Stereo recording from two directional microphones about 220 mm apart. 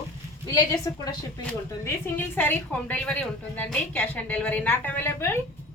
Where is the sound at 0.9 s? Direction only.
15° left (ahead or behind).